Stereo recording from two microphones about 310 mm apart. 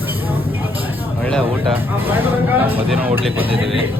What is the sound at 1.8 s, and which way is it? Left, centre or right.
Speech, centre.